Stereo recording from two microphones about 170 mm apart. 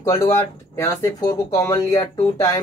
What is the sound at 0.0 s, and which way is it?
Speech, 20° left (ahead or behind).